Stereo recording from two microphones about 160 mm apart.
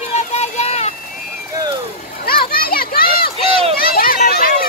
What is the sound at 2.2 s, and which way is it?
Children playing, 65° left (ahead or behind).